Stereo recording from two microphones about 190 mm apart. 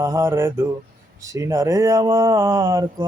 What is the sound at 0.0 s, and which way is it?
Speech, 15° right (ahead or behind).